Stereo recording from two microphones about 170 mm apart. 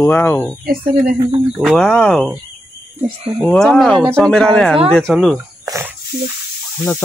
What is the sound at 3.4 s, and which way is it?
Speech, 5° left (ahead or behind).